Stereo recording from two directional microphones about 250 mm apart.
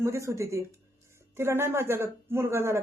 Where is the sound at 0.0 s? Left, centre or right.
Centre.